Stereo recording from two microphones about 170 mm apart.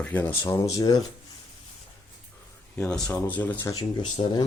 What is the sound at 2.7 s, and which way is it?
Speech, 10° left (ahead or behind).